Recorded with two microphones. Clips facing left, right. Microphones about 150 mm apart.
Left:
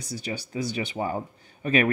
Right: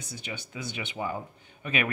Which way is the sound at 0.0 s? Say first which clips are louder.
Left 6 dB; 35° left (ahead or behind).